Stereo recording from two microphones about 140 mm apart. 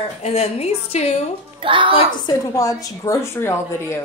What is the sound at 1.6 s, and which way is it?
Speech, 35° right (ahead or behind).